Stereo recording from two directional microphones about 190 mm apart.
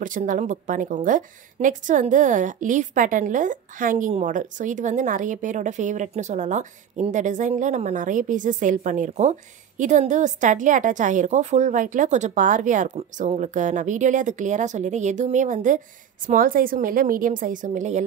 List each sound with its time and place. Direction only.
0.0 s a woman's voice: 45° right (ahead or behind)